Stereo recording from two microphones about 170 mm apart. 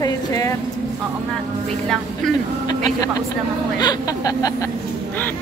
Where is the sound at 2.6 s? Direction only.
25° left (ahead or behind).